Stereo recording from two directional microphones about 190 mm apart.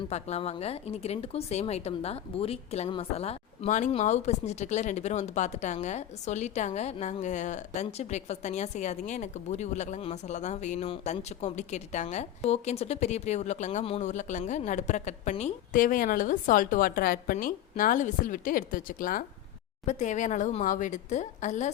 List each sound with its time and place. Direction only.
0.1 s speech: 35° left (ahead or behind)